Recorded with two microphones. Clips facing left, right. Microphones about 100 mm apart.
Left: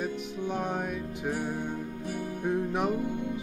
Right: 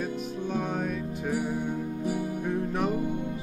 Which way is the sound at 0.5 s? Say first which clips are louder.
Right 1 dB; 20° left (ahead or behind).